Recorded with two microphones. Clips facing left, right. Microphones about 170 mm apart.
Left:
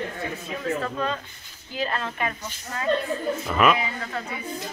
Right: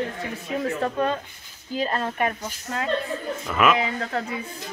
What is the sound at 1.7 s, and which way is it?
Speech, 40° right (ahead or behind).